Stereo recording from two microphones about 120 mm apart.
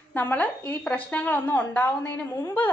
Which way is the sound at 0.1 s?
15° left (ahead or behind).